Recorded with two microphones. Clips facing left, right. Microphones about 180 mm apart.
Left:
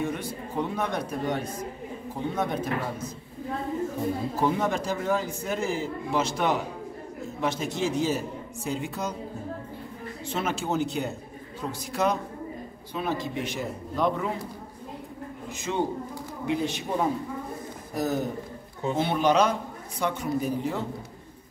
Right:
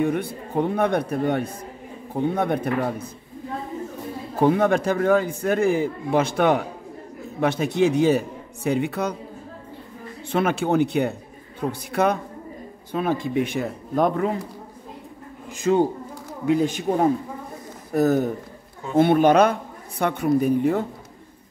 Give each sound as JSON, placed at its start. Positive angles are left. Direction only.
{"t": 0.0, "sound": "a man's voice", "side_deg": -60}
{"t": 4.4, "sound": "a man's voice", "side_deg": -60}
{"t": 10.3, "sound": "a man's voice", "side_deg": -60}
{"t": 15.7, "sound": "a man's voice", "side_deg": -55}